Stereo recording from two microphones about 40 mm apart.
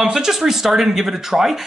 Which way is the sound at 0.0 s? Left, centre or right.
Centre.